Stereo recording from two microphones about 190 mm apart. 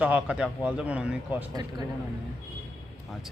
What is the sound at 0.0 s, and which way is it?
Speech, 5° right (ahead or behind).